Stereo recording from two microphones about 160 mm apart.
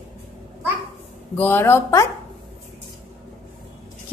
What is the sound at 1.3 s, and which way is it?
Speech, 15° left (ahead or behind).